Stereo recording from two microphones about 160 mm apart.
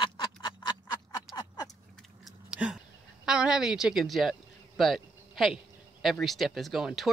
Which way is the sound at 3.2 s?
5° right (ahead or behind).